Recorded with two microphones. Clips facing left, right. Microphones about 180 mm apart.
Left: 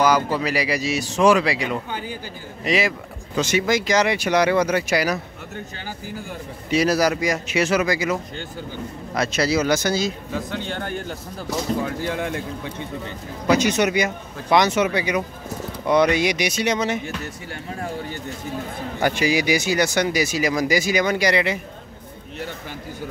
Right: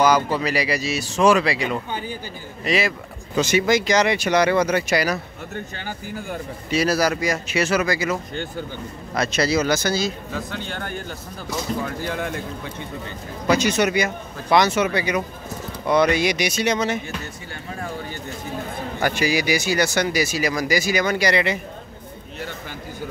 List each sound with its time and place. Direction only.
0.4 s speech: 10° left (ahead or behind)
3.3 s speech: 5° right (ahead or behind)
5.8 s speech: 60° right (ahead or behind)
6.7 s speech: 15° left (ahead or behind)
18.9 s speech: 20° left (ahead or behind)